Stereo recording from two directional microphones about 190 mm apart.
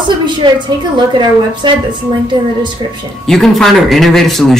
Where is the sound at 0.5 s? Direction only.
25° right (ahead or behind).